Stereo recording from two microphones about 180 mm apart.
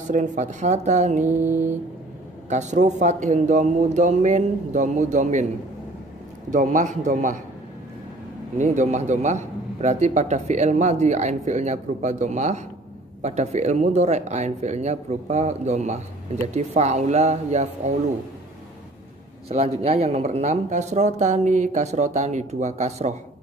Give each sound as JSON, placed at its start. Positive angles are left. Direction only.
{"t": 0.1, "sound": "a man's voice", "side_deg": -40}
{"t": 1.3, "sound": "mantra", "side_deg": -10}
{"t": 2.5, "sound": "a man's voice", "side_deg": -40}
{"t": 6.5, "sound": "a man's voice", "side_deg": -45}
{"t": 8.5, "sound": "a man's voice", "side_deg": -40}
{"t": 19.8, "sound": "a man's voice", "side_deg": -35}